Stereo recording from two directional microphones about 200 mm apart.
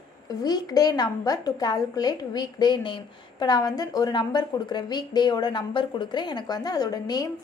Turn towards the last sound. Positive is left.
turn(degrees=20)  # may be behind; listen again after turning